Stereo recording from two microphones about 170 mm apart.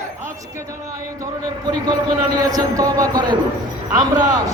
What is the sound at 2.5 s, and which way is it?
A man's voice, 20° right (ahead or behind).